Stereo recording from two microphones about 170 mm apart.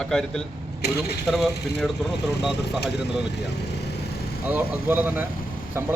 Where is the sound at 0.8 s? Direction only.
70° left (ahead or behind).